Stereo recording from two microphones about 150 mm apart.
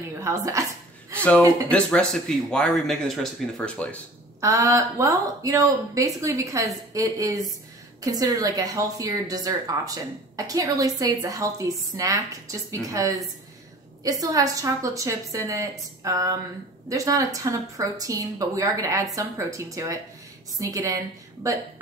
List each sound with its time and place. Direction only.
0.2 s a woman's voice: 20° right (ahead or behind)
1.7 s speech: 5° left (ahead or behind)
4.4 s a woman's voice: 20° right (ahead or behind)